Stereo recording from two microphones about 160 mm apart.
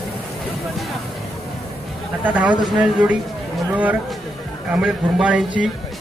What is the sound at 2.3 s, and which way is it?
Speech, 10° right (ahead or behind).